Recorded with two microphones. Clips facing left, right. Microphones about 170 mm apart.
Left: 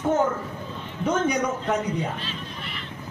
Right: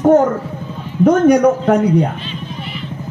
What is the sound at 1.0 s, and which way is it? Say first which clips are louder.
A man's voice: right 14 dB; 65° right (ahead or behind).